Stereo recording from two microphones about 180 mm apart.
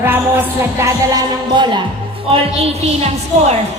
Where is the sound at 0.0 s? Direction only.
10° right (ahead or behind).